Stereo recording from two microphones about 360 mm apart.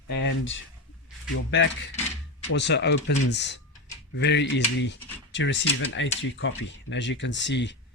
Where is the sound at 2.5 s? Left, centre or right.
Left.